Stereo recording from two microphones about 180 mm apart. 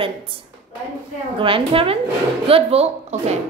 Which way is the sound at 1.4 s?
30° right (ahead or behind).